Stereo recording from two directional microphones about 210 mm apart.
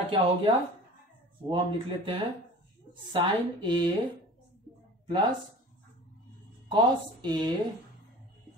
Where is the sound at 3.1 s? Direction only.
20° right (ahead or behind).